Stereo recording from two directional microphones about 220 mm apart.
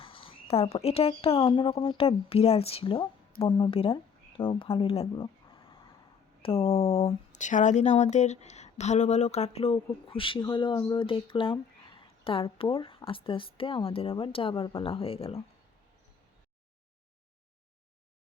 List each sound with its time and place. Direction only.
0.0 s speech: 25° left (ahead or behind)